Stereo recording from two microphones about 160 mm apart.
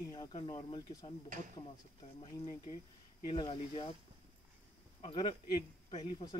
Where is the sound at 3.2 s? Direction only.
30° left (ahead or behind).